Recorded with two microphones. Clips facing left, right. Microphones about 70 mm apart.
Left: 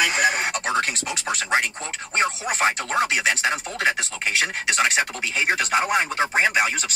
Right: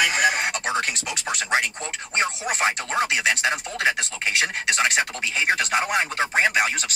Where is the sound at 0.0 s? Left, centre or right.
Centre.